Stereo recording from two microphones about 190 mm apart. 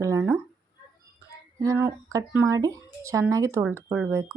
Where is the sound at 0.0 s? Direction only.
15° right (ahead or behind).